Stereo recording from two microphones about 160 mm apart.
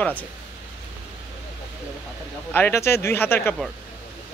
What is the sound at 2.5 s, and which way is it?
Speech, 15° left (ahead or behind).